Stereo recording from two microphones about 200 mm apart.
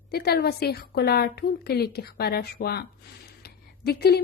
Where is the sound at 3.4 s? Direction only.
50° left (ahead or behind).